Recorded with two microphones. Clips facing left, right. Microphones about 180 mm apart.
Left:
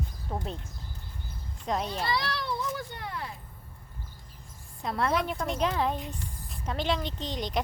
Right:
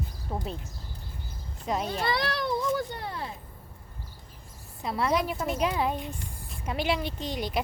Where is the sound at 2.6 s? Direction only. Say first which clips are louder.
Right 6 dB; 35° right (ahead or behind).